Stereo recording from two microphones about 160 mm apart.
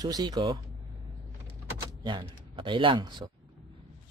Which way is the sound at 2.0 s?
30° right (ahead or behind).